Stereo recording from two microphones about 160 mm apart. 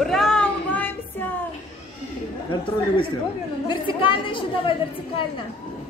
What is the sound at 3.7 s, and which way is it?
A woman's voice, 30° left (ahead or behind).